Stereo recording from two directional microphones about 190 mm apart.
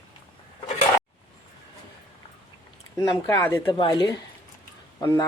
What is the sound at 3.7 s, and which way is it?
Speech, 25° left (ahead or behind).